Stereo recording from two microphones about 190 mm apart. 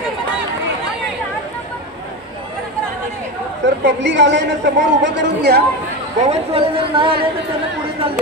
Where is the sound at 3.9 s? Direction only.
70° right (ahead or behind).